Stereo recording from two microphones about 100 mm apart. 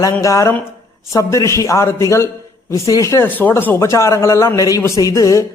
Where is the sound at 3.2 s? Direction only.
20° left (ahead or behind).